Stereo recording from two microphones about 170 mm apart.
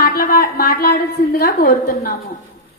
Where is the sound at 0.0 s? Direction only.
60° left (ahead or behind).